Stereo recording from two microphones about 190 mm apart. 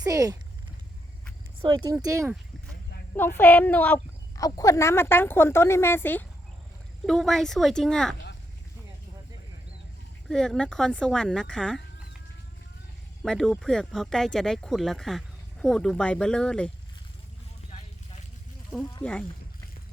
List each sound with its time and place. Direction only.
0.0 s speech: 20° right (ahead or behind)
1.6 s speech: 20° right (ahead or behind)
3.2 s speech: 10° left (ahead or behind)
10.2 s speech: 5° left (ahead or behind)
13.2 s speech: 5° left (ahead or behind)
17.7 s vehicle: 35° left (ahead or behind)